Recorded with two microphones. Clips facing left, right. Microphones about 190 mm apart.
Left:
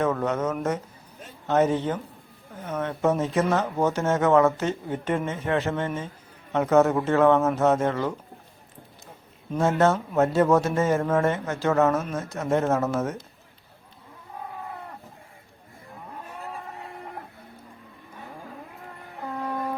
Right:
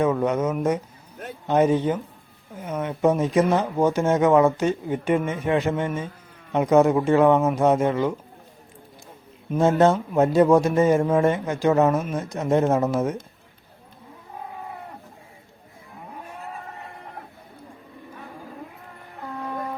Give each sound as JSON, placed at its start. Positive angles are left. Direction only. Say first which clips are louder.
{"t": 0.0, "sound": "speech", "louder": "right 3 dB", "side_deg": -10}
{"t": 9.5, "sound": "speech", "louder": "right 3 dB", "side_deg": -15}